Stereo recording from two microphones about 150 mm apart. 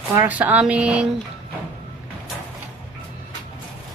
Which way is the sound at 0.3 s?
10° right (ahead or behind).